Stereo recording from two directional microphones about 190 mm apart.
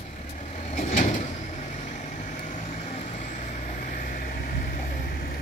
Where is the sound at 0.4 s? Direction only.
35° left (ahead or behind).